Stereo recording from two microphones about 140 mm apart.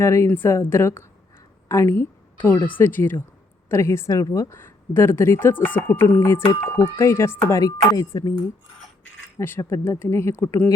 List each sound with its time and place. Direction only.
0.0 s a woman's voice: 20° left (ahead or behind)
9.4 s speech: 15° left (ahead or behind)